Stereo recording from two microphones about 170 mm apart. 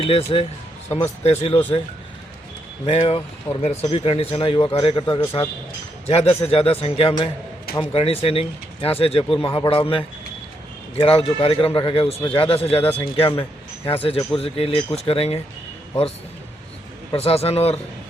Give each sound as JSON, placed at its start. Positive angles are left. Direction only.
{"t": 0.0, "sound": "speech", "side_deg": 35}
{"t": 2.8, "sound": "speech", "side_deg": 35}
{"t": 17.2, "sound": "speech", "side_deg": 35}